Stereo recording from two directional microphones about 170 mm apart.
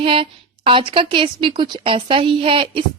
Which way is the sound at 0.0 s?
30° right (ahead or behind).